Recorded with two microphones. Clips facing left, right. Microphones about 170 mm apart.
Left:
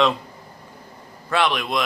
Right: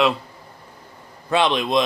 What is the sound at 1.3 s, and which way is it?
Speech, 20° right (ahead or behind).